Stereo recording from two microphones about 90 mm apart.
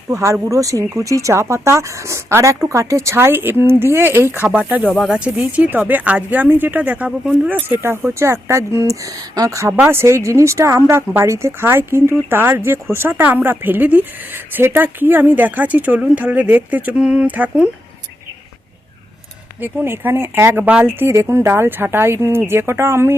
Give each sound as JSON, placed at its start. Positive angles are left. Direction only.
{"t": 0.1, "sound": "speech", "side_deg": -35}
{"t": 7.8, "sound": "speech", "side_deg": -30}
{"t": 9.9, "sound": "speech", "side_deg": -30}
{"t": 19.6, "sound": "speech", "side_deg": -25}